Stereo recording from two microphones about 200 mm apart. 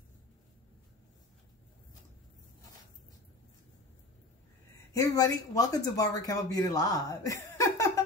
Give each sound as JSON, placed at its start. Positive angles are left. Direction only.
{"t": 4.9, "sound": "speech", "side_deg": 15}